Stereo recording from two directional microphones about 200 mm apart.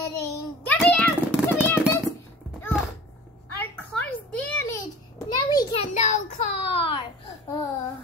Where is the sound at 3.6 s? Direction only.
10° left (ahead or behind).